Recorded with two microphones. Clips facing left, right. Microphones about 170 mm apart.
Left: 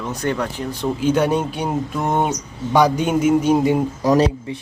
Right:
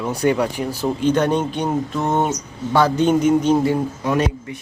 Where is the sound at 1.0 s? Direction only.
10° left (ahead or behind).